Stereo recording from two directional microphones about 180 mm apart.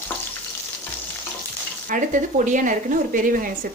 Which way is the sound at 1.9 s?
45° right (ahead or behind).